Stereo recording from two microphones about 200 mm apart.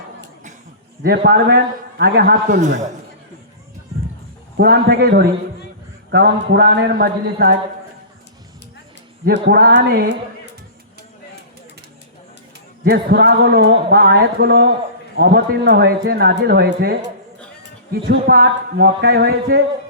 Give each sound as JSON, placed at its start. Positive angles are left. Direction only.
{"t": 1.0, "sound": "speech", "side_deg": -50}
{"t": 4.5, "sound": "speech", "side_deg": -50}
{"t": 9.2, "sound": "speech", "side_deg": -50}
{"t": 12.8, "sound": "speech", "side_deg": -50}
{"t": 17.9, "sound": "speech", "side_deg": -50}